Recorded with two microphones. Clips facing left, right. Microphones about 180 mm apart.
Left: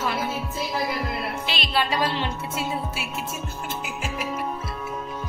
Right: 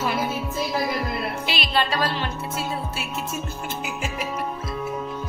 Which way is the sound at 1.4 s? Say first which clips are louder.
Right 2 dB; 10° right (ahead or behind).